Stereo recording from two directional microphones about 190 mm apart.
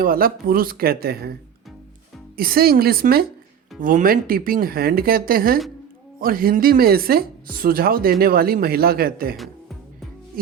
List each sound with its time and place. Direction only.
0.0 s speech: 50° right (ahead or behind)
10.4 s music: 50° right (ahead or behind)